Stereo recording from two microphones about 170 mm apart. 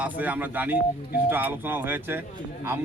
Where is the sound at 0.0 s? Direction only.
10° right (ahead or behind).